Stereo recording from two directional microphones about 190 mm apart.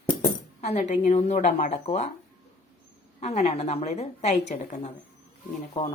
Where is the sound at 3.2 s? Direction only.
35° left (ahead or behind).